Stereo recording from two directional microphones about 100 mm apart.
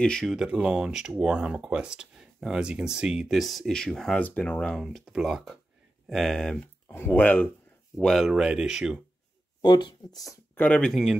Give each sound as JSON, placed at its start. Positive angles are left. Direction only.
{"t": 0.0, "sound": "speech", "side_deg": 5}
{"t": 0.4, "sound": "speech", "side_deg": -10}
{"t": 6.9, "sound": "speech", "side_deg": 20}
{"t": 8.0, "sound": "speech", "side_deg": 0}
{"t": 9.6, "sound": "speech", "side_deg": 50}
{"t": 10.5, "sound": "speech", "side_deg": 15}
{"t": 10.9, "sound": "speech", "side_deg": 0}